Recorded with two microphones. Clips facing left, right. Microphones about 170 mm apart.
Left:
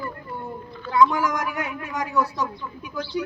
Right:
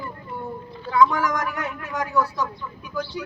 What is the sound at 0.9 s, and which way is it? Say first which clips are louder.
A woman's voice: even; 10° left (ahead or behind).